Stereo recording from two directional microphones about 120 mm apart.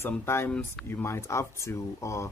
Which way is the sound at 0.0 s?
20° left (ahead or behind).